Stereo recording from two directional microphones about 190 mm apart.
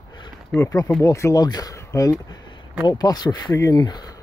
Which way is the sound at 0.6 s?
20° left (ahead or behind).